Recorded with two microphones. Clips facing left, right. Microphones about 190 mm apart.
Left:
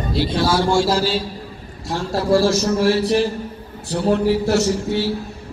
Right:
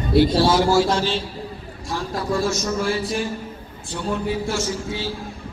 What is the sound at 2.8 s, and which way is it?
A man's voice, 65° left (ahead or behind).